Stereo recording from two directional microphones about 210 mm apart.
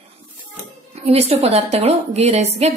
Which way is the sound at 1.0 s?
30° right (ahead or behind).